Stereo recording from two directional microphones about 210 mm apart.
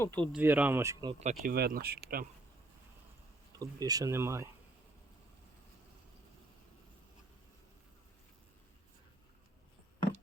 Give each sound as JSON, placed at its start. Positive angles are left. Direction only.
{"t": 0.0, "sound": "speech", "side_deg": 10}
{"t": 0.3, "sound": "speech", "side_deg": -10}
{"t": 1.2, "sound": "speech", "side_deg": -40}
{"t": 3.5, "sound": "speech", "side_deg": -15}